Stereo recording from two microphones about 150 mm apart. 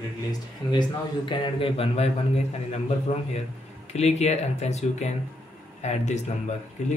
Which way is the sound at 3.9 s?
45° left (ahead or behind).